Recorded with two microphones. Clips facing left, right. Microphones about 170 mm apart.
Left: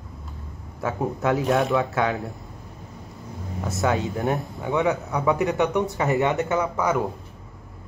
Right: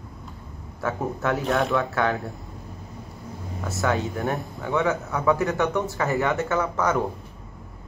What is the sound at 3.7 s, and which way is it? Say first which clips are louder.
Speech: left 1 dB; 20° left (ahead or behind).